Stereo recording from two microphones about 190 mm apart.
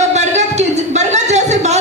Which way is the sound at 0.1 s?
35° right (ahead or behind).